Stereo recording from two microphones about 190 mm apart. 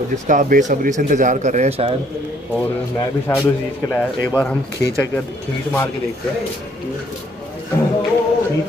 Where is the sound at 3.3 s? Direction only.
15° left (ahead or behind).